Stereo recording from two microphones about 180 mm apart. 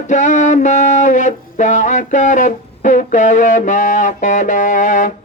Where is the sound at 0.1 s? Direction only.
45° left (ahead or behind).